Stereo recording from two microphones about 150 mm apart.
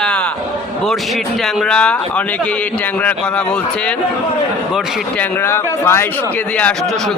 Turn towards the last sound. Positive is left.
turn(degrees=15)  # may be behind; listen again after turning